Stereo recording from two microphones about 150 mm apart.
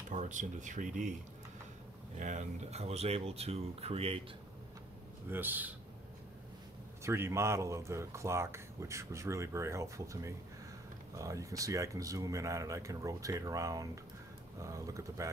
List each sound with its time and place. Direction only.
0.1 s speech: 55° right (ahead or behind)
2.1 s speech: 55° right (ahead or behind)
5.3 s a man's voice: 10° right (ahead or behind)
7.0 s speech: 20° right (ahead or behind)